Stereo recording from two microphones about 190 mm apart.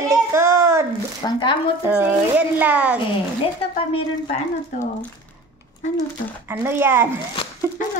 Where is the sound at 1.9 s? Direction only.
5° right (ahead or behind).